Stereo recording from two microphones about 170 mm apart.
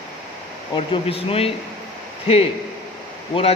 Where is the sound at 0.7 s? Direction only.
35° left (ahead or behind).